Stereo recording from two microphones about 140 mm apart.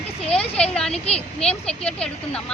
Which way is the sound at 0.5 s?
5° left (ahead or behind).